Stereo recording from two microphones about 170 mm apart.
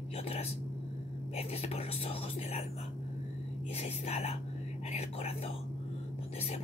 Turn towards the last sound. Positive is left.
turn(degrees=40)  # may be behind; listen again after turning